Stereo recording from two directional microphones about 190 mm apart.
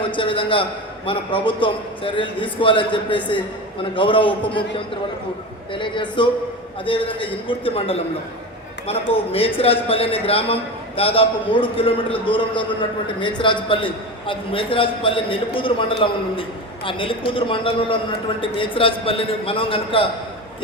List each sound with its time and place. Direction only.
0.0 s a man's voice: 25° left (ahead or behind)
5.7 s a man's voice: 25° left (ahead or behind)